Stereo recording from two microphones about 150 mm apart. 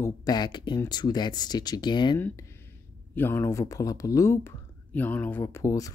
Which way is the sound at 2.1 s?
15° left (ahead or behind).